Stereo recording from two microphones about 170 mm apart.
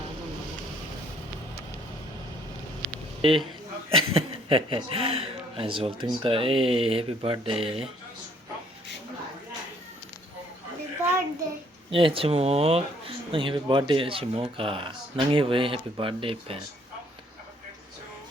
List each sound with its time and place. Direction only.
3.2 s speech: 30° right (ahead or behind)
11.9 s speech: 30° right (ahead or behind)